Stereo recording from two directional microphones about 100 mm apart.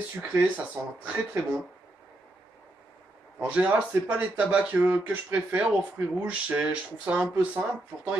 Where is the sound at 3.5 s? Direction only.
15° right (ahead or behind).